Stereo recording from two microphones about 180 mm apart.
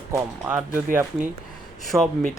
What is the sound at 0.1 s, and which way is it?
Speech, 10° right (ahead or behind).